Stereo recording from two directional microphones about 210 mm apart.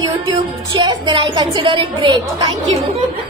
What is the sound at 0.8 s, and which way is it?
A woman's voice, 20° right (ahead or behind).